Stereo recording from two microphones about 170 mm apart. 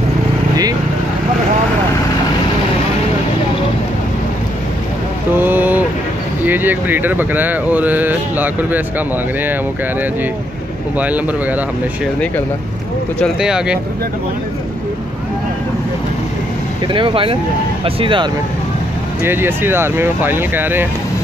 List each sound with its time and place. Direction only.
5.4 s vehicle: 10° right (ahead or behind)
6.4 s speech: 10° right (ahead or behind)
11.0 s speech: 10° right (ahead or behind)
13.2 s speech: 5° right (ahead or behind)
16.8 s speech: 30° right (ahead or behind)
19.2 s speech: 15° right (ahead or behind)